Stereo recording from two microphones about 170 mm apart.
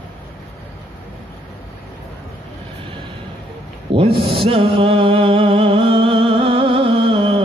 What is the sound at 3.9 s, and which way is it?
Mantra, 30° right (ahead or behind).